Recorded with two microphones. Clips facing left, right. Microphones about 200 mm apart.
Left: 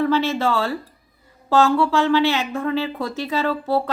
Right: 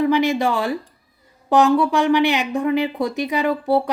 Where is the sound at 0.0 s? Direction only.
15° right (ahead or behind).